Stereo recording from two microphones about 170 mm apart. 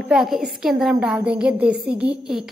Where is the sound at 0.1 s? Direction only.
5° right (ahead or behind).